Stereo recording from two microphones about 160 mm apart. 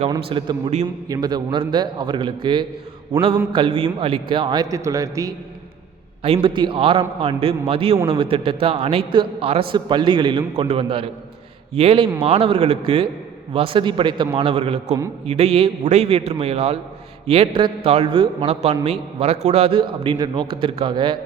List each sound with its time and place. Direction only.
0.1 s a man's voice: 30° right (ahead or behind)
6.2 s a man's voice: 35° right (ahead or behind)